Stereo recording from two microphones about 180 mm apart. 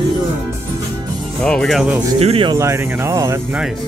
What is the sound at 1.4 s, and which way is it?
Speech, 5° left (ahead or behind).